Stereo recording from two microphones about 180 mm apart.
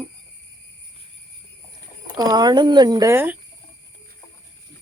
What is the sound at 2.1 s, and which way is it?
Speech, 20° right (ahead or behind).